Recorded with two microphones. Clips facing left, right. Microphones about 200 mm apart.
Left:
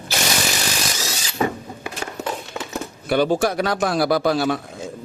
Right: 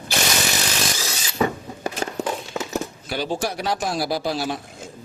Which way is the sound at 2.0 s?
40° right (ahead or behind).